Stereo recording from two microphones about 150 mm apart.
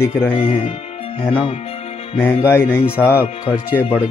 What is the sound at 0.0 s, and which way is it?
Speech, 15° left (ahead or behind).